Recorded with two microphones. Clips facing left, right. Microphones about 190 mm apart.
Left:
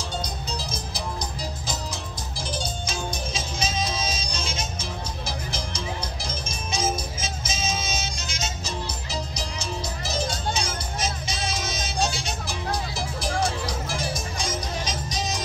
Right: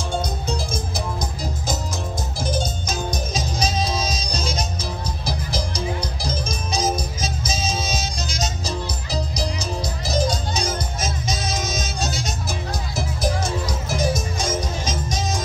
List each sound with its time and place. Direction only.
0.2 s music: 50° right (ahead or behind)
2.4 s music: 45° right (ahead or behind)